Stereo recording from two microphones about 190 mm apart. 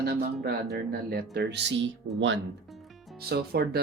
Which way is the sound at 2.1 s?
75° right (ahead or behind).